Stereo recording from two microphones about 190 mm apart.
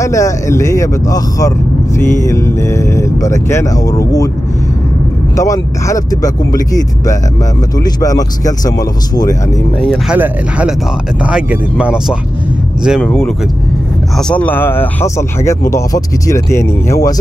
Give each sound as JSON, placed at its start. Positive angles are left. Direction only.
{"t": 0.0, "sound": "speech", "side_deg": 15}
{"t": 5.3, "sound": "speech", "side_deg": 15}
{"t": 7.8, "sound": "speech", "side_deg": 20}
{"t": 9.8, "sound": "speech", "side_deg": -5}
{"t": 11.8, "sound": "speech", "side_deg": -5}